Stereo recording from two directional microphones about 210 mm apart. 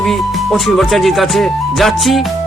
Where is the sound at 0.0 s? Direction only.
Centre (ahead or behind).